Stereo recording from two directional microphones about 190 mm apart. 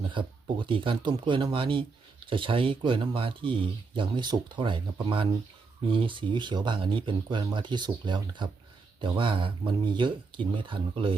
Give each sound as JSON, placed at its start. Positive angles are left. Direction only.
{"t": 0.1, "sound": "speech", "side_deg": -25}